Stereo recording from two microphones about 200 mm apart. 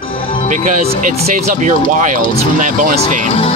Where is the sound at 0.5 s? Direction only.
40° right (ahead or behind).